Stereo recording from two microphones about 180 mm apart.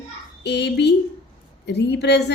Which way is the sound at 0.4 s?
70° left (ahead or behind).